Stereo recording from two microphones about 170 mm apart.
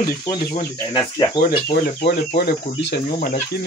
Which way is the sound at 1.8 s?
70° left (ahead or behind).